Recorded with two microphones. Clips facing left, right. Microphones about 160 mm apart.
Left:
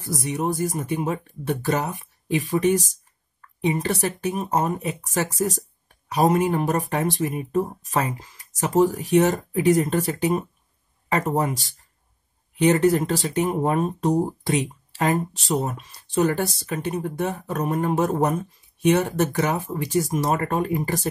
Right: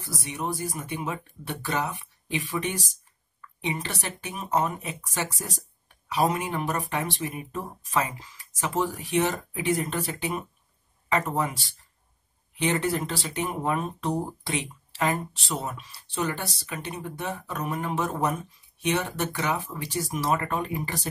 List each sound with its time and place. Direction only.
0.0 s speech: 45° left (ahead or behind)
14.4 s a sound: 40° left (ahead or behind)
15.3 s speech: 45° left (ahead or behind)